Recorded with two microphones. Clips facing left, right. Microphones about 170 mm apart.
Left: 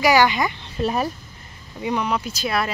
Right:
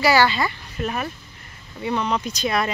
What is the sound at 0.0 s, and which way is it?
Speech, 15° left (ahead or behind).